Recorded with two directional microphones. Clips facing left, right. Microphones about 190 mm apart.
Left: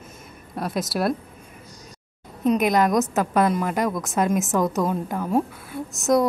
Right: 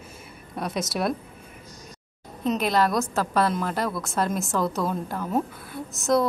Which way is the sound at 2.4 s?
15° left (ahead or behind).